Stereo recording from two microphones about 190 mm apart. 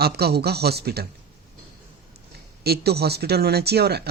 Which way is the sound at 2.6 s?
55° right (ahead or behind).